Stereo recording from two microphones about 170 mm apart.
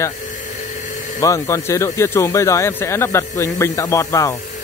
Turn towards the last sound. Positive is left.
turn(degrees=20)  # may be behind; listen again after turning